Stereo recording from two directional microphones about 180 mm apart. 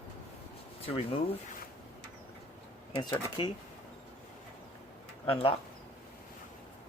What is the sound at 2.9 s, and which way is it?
Speech, 25° left (ahead or behind).